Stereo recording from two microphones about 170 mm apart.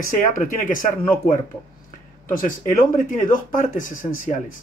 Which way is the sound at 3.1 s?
50° left (ahead or behind).